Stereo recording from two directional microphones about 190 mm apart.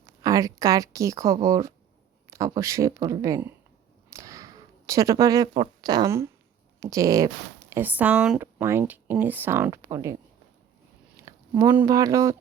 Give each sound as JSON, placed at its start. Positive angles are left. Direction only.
{"t": 0.2, "sound": "speech", "side_deg": -20}
{"t": 4.1, "sound": "a sound", "side_deg": -15}
{"t": 6.7, "sound": "speech", "side_deg": -20}
{"t": 11.2, "sound": "speech", "side_deg": -15}